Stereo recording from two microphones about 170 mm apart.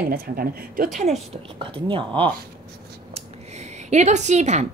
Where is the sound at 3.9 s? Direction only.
45° right (ahead or behind).